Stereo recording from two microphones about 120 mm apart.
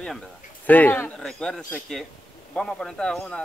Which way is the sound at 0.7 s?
15° left (ahead or behind).